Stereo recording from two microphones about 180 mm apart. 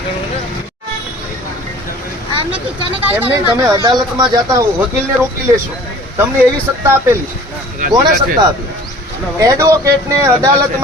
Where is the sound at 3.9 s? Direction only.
25° right (ahead or behind).